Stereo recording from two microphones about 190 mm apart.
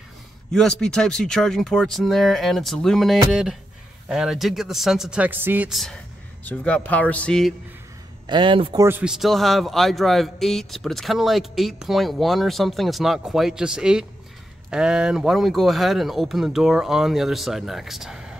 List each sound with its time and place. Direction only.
0.5 s a man's voice: 5° left (ahead or behind)
8.3 s speech: 25° right (ahead or behind)
8.8 s a man's voice: 5° right (ahead or behind)